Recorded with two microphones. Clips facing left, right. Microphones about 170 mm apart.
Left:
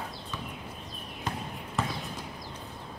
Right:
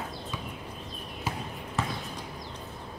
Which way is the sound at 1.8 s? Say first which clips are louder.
Even; centre (ahead or behind).